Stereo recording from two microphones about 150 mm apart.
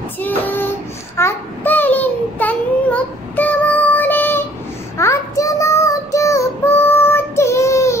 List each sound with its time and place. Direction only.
0.2 s child singing: 15° left (ahead or behind)